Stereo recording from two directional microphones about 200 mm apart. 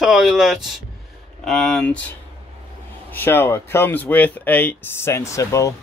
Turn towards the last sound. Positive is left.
turn(degrees=15)  # may be behind; listen again after turning